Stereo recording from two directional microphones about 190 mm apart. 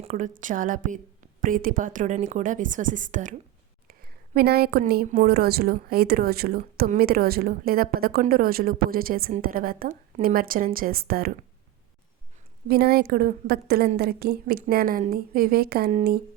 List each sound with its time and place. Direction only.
0.0 s a woman's voice: 40° right (ahead or behind)
3.8 s a woman's voice: 50° right (ahead or behind)
12.6 s a woman's voice: 55° right (ahead or behind)